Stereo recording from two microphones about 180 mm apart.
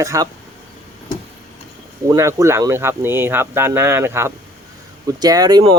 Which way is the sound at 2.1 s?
15° right (ahead or behind).